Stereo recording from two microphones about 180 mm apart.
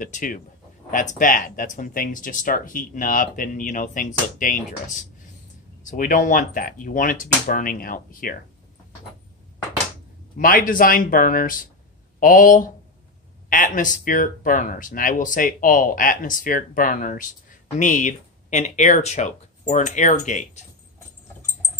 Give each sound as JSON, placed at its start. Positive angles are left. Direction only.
{"t": 0.0, "sound": "speech", "side_deg": 50}
{"t": 10.3, "sound": "speech", "side_deg": 50}